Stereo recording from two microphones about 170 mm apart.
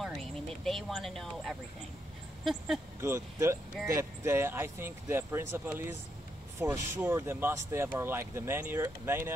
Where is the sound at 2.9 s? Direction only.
15° right (ahead or behind).